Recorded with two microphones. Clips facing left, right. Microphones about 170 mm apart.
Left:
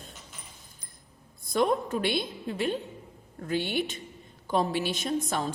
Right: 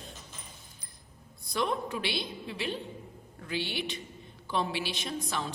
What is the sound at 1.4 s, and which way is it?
A woman's voice, 50° left (ahead or behind).